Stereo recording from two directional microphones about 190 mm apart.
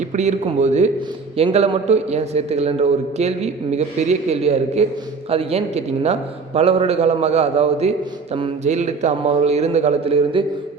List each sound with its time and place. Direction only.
0.1 s a man's voice: 40° right (ahead or behind)